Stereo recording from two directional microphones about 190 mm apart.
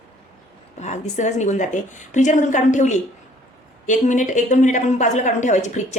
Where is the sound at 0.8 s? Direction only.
40° left (ahead or behind).